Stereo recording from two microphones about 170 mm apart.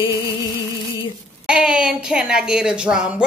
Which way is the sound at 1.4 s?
5° right (ahead or behind).